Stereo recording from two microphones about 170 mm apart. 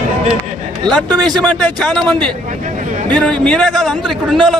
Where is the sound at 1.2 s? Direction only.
5° left (ahead or behind).